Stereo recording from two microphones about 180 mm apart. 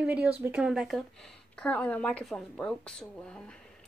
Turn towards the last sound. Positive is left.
turn(degrees=5)  # may be behind; listen again after turning